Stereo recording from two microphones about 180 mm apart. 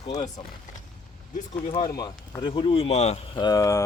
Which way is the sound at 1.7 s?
25° left (ahead or behind).